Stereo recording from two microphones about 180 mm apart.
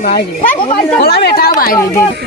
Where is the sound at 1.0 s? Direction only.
60° left (ahead or behind).